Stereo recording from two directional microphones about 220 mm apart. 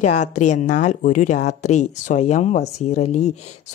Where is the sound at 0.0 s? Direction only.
35° left (ahead or behind).